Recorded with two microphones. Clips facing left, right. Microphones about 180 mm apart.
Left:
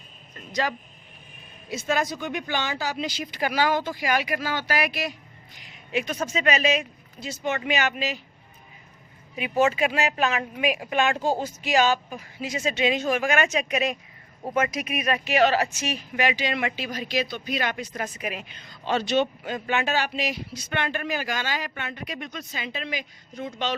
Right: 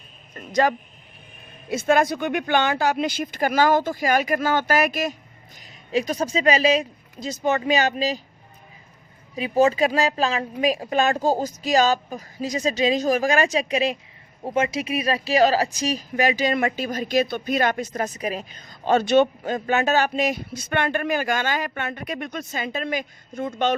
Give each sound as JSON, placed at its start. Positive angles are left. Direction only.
{"t": 0.3, "sound": "speech", "side_deg": -50}
{"t": 1.7, "sound": "speech", "side_deg": -55}
{"t": 9.3, "sound": "speech", "side_deg": -35}